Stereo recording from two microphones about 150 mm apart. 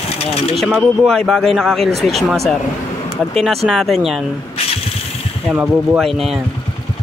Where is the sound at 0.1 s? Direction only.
40° left (ahead or behind).